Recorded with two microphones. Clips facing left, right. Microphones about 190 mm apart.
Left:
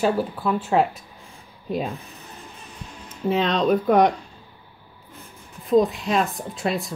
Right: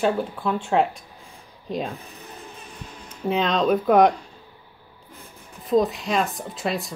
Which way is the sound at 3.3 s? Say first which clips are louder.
Left 1 dB; centre (ahead or behind).